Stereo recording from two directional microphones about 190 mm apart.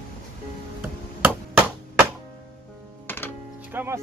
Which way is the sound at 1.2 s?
10° right (ahead or behind).